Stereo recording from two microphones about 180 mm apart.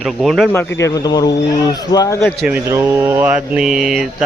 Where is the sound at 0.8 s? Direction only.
20° left (ahead or behind).